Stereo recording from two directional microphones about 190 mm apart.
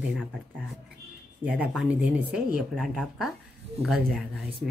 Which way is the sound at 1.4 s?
10° right (ahead or behind).